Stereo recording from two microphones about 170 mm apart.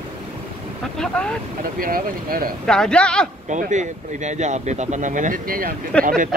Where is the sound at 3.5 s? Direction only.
45° right (ahead or behind).